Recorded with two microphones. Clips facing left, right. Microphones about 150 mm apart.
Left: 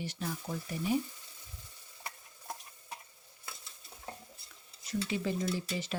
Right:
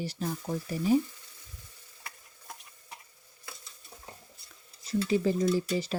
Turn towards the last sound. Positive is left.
turn(degrees=-35)  # may be behind; listen again after turning